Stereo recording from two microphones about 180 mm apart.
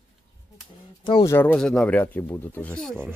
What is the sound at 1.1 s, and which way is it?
Speech, 25° left (ahead or behind).